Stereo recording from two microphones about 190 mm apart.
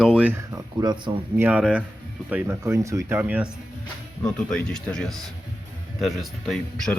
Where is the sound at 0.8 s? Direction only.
20° right (ahead or behind).